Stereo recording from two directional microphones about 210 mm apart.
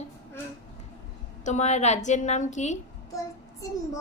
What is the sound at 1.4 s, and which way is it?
A woman's voice, 35° left (ahead or behind).